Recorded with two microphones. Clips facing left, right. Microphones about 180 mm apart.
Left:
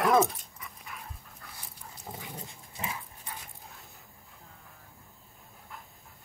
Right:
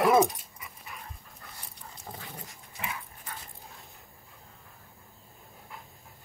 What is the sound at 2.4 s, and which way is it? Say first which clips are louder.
Dog: even; 30° left (ahead or behind).